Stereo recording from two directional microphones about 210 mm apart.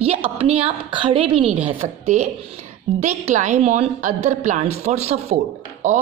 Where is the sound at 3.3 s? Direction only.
35° right (ahead or behind).